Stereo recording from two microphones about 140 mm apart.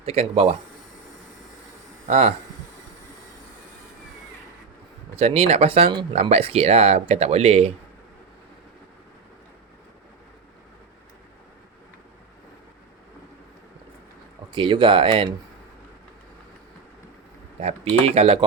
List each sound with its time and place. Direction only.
0.0 s speech: 45° right (ahead or behind)
2.0 s speech: 50° right (ahead or behind)
5.1 s speech: 50° right (ahead or behind)
14.5 s speech: 35° right (ahead or behind)
18.0 s speech: 45° right (ahead or behind)